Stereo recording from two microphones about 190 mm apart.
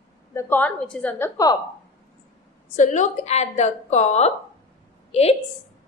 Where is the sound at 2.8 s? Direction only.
35° left (ahead or behind).